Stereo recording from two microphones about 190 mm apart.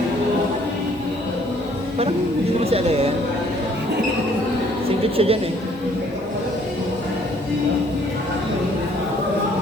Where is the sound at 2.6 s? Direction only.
30° right (ahead or behind).